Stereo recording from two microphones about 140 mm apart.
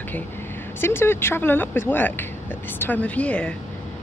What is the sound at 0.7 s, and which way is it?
Speech, 15° left (ahead or behind).